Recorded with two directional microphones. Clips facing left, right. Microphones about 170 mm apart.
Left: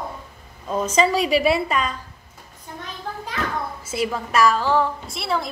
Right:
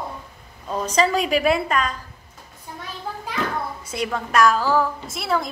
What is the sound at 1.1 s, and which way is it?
Speech, 45° right (ahead or behind).